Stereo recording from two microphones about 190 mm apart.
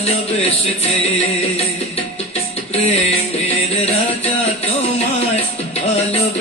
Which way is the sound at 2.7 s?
35° left (ahead or behind).